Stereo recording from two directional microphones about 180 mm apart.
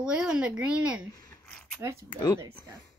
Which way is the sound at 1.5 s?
5° left (ahead or behind).